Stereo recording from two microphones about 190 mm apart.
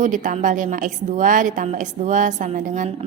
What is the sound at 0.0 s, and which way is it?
A woman's voice, 45° right (ahead or behind).